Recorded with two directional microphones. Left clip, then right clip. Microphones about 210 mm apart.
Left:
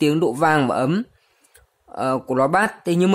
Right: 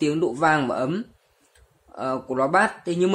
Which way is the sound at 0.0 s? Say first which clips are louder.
Left 3 dB; 50° left (ahead or behind).